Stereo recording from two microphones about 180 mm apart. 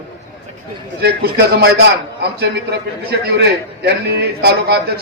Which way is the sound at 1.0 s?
65° right (ahead or behind).